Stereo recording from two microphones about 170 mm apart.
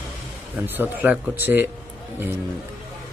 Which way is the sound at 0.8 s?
10° right (ahead or behind).